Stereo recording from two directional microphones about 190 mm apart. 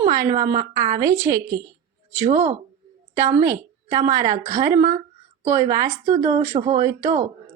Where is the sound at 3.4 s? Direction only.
20° right (ahead or behind).